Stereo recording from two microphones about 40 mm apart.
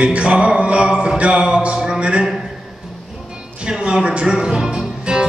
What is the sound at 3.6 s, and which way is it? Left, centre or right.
Music, right.